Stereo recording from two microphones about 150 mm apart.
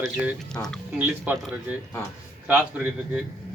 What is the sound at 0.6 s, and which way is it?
Speech, 20° left (ahead or behind).